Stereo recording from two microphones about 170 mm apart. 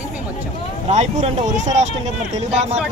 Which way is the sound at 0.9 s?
40° right (ahead or behind).